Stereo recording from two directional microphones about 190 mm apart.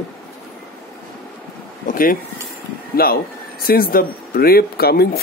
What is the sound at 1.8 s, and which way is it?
Speech, 45° left (ahead or behind).